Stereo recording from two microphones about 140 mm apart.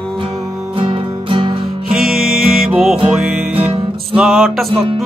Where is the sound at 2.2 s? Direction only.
Centre (ahead or behind).